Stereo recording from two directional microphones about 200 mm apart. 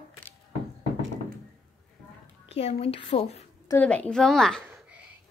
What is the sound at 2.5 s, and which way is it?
Speech, 30° left (ahead or behind).